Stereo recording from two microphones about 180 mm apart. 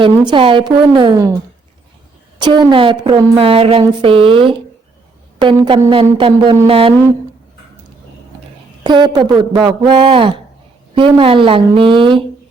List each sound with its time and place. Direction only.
0.3 s a woman's voice: 30° right (ahead or behind)
2.4 s a woman's voice: 25° right (ahead or behind)
8.8 s a woman's voice: 25° right (ahead or behind)